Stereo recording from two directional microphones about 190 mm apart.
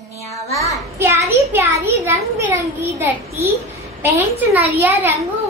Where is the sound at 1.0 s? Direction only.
15° right (ahead or behind).